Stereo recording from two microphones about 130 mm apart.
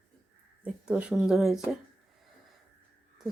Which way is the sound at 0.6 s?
10° right (ahead or behind).